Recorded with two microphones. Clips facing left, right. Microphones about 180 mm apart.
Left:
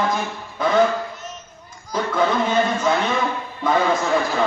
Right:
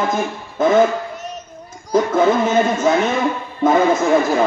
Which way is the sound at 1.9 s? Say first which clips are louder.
Right 6 dB; 45° right (ahead or behind).